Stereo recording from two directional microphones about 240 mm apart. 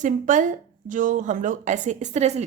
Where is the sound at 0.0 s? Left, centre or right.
Right.